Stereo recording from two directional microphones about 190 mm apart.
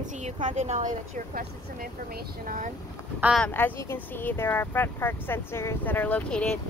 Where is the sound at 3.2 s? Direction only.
5° left (ahead or behind).